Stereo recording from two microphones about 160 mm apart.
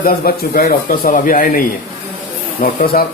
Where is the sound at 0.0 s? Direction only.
70° left (ahead or behind).